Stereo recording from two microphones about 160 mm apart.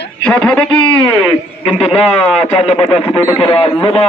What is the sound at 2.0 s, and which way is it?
Speech, 40° left (ahead or behind).